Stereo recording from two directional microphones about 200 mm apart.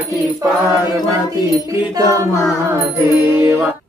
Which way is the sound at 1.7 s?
15° right (ahead or behind).